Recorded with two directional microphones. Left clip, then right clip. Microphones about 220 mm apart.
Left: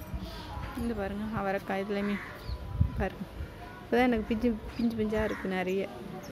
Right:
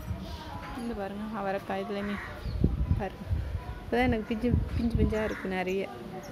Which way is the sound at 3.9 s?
10° left (ahead or behind).